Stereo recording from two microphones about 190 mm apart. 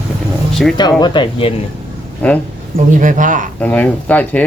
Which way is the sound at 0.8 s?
20° left (ahead or behind).